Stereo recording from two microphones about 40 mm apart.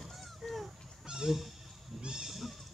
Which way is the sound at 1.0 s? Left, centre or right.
Centre.